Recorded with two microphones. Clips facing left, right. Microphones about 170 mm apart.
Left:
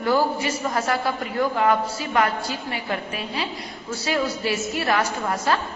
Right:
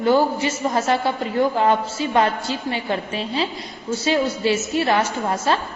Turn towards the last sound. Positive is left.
turn(degrees=-25)  # may be behind; listen again after turning